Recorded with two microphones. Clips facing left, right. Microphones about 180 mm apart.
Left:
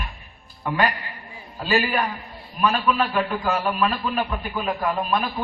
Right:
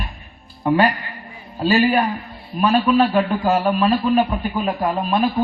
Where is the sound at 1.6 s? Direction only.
40° right (ahead or behind).